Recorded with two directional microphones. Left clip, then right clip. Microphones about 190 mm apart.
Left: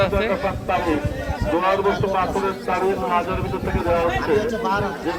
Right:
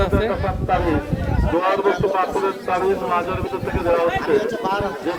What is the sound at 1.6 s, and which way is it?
Speech, 50° left (ahead or behind).